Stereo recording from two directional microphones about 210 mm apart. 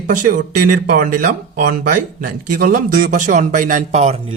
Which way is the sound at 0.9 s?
40° right (ahead or behind).